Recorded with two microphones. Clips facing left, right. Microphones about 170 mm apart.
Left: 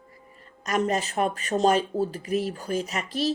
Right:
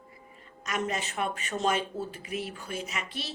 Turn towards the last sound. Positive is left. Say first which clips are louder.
# left 10 dB
turn(degrees=40)  # may be behind; listen again after turning